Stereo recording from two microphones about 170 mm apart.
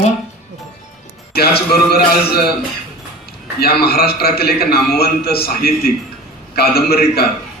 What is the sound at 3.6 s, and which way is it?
A man's voice, 65° left (ahead or behind).